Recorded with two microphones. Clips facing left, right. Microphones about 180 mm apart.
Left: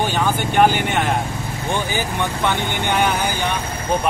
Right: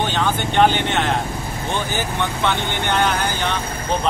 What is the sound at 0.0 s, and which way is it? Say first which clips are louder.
Speech: left 1 dB; 10° left (ahead or behind).